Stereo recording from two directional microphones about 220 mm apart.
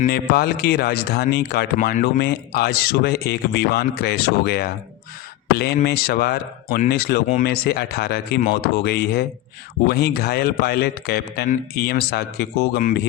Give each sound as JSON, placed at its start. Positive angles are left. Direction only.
{"t": 0.0, "sound": "speech", "side_deg": 45}